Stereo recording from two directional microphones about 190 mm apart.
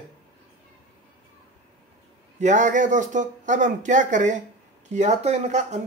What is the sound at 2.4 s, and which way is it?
Speech, 40° right (ahead or behind).